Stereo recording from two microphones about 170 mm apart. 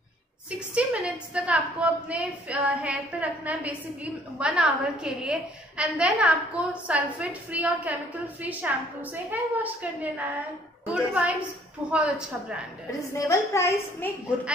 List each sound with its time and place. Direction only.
0.5 s a woman's voice: 5° right (ahead or behind)
13.2 s a woman's voice: 20° left (ahead or behind)